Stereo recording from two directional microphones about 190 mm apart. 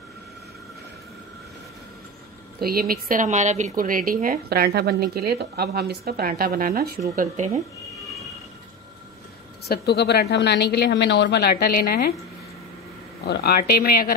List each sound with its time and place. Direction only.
2.6 s a woman's voice: 50° right (ahead or behind)
7.0 s speech: 40° right (ahead or behind)
9.7 s a woman's voice: 60° left (ahead or behind)
13.2 s speech: 55° left (ahead or behind)